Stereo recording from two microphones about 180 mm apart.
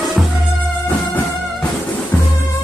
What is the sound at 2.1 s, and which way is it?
Music, 10° left (ahead or behind).